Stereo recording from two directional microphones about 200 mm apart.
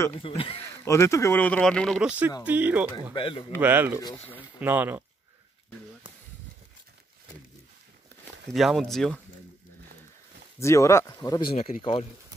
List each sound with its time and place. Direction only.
0.4 s speech: 30° left (ahead or behind)
0.7 s speech: 15° left (ahead or behind); by 2.9 s 10° right (ahead or behind)
3.1 s speech: 25° left (ahead or behind)
3.5 s speech: 10° right (ahead or behind)
4.0 s speech: 10° left (ahead or behind)
4.6 s speech: 10° right (ahead or behind)
8.5 s speech: centre (ahead or behind)
10.6 s speech: 15° left (ahead or behind)
11.5 s speech: 35° left (ahead or behind)